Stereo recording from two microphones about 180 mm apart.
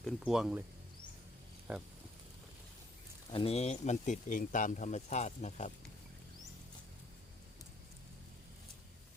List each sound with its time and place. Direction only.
0.0 s speech: centre (ahead or behind)
1.7 s speech: 10° right (ahead or behind)
3.3 s speech: 35° left (ahead or behind)